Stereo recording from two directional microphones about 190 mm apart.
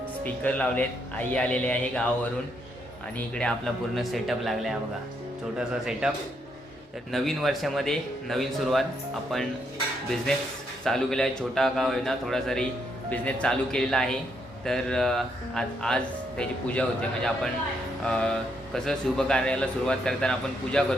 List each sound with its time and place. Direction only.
0.4 s a man's voice: 10° left (ahead or behind)
3.2 s speech: 5° left (ahead or behind)
7.1 s speech: centre (ahead or behind)
10.8 s speech: 5° left (ahead or behind)